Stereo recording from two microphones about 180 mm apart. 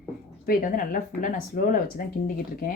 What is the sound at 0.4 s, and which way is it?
Speech, 50° left (ahead or behind).